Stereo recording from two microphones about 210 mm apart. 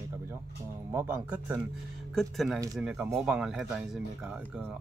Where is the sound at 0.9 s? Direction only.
10° right (ahead or behind).